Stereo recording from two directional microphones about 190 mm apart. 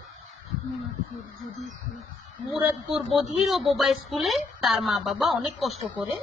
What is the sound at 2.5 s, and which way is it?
Speech, centre (ahead or behind).